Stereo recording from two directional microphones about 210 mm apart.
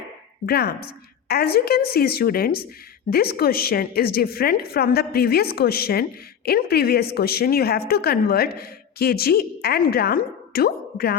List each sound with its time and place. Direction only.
0.4 s a woman's voice: 50° left (ahead or behind)